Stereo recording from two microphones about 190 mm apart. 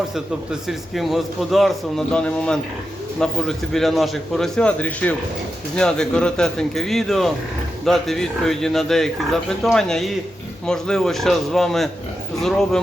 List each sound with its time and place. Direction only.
0.7 s a man's voice: centre (ahead or behind)